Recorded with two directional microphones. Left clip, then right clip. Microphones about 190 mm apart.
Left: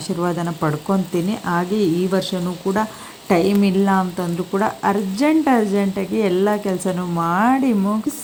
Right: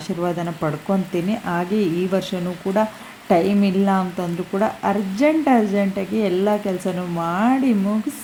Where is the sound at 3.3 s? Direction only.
10° left (ahead or behind).